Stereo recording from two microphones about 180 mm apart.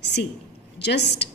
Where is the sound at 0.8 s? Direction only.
70° left (ahead or behind).